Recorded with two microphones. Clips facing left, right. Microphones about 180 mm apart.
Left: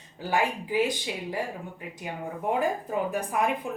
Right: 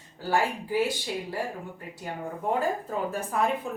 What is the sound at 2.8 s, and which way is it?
Speech, 15° left (ahead or behind).